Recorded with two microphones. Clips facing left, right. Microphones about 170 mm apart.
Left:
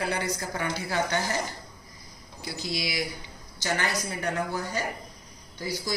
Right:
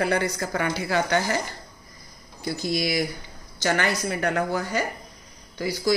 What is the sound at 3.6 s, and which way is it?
A woman's voice, 70° right (ahead or behind).